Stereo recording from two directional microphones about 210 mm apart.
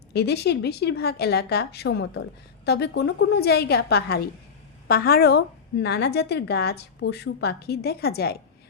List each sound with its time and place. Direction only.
0.1 s a woman's voice: 50° left (ahead or behind)